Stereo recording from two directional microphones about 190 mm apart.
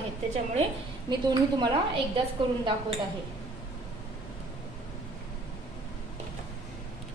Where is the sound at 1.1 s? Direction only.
20° right (ahead or behind).